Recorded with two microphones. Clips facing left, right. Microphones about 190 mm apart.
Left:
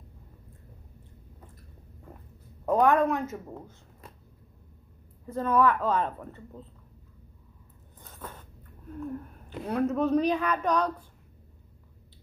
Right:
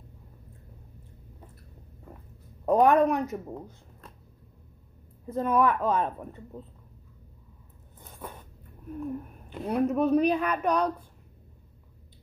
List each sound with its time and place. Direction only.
2.6 s a woman's voice: 15° right (ahead or behind)
5.2 s a woman's voice: 15° right (ahead or behind)
8.0 s a sound: 10° right (ahead or behind)
8.9 s a woman's voice: 15° right (ahead or behind)